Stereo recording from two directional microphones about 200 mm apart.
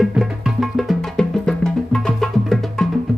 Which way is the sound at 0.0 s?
Centre (ahead or behind).